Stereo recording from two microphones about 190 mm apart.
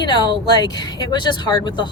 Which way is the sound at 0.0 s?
20° left (ahead or behind).